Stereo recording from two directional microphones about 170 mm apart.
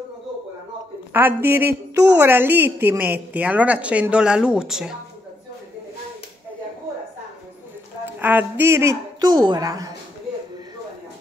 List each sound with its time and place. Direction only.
1.1 s a woman's voice: 10° right (ahead or behind)
8.0 s a woman's voice: 10° right (ahead or behind)